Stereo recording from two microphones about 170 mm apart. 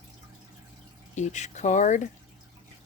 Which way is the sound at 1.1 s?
45° left (ahead or behind).